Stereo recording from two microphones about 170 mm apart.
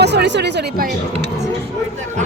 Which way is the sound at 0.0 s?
85° right.